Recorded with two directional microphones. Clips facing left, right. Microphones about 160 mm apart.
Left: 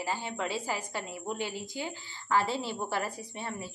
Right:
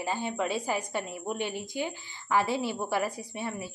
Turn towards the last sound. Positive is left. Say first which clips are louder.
# right 3 dB
turn(degrees=-10)  # may be behind; listen again after turning